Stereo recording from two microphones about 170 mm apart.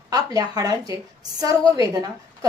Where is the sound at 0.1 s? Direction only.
20° right (ahead or behind).